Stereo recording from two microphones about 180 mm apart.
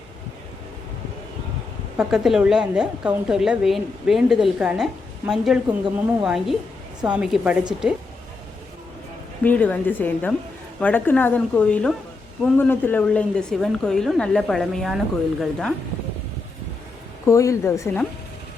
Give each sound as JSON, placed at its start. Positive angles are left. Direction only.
{"t": 2.0, "sound": "a woman's voice", "side_deg": -5}
{"t": 9.4, "sound": "a woman's voice", "side_deg": 10}
{"t": 17.2, "sound": "a woman's voice", "side_deg": 15}